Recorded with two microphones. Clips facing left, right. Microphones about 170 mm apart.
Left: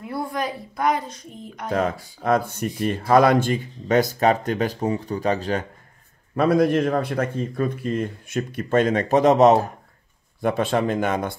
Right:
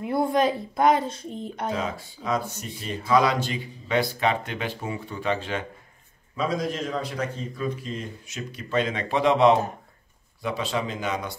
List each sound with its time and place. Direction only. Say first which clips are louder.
0.0 s a child's voice: right 5 dB; 25° right (ahead or behind)
1.7 s speech: left 9 dB; 55° left (ahead or behind)
6.3 s speech: left 9 dB; 60° left (ahead or behind); by 9.6 s 45° left (ahead or behind)
10.4 s speech: left 7 dB; 55° left (ahead or behind)